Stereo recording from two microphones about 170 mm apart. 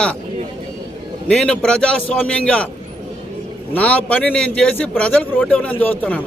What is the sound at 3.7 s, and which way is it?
Speech, 10° left (ahead or behind).